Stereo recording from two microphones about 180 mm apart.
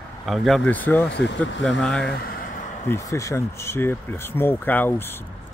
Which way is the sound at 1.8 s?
5° left (ahead or behind).